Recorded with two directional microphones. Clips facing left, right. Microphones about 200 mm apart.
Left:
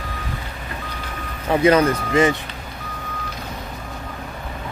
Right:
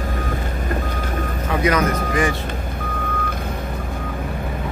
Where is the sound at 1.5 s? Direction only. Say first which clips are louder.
Left 4 dB; 30° left (ahead or behind).